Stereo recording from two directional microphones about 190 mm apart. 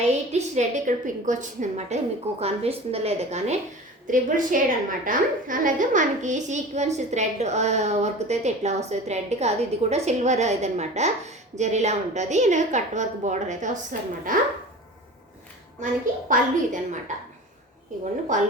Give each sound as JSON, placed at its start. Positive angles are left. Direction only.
{"t": 0.3, "sound": "a woman's voice", "side_deg": -35}
{"t": 16.3, "sound": "a woman's voice", "side_deg": -40}